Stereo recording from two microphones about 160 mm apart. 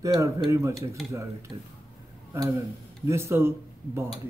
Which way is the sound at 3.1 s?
15° right (ahead or behind).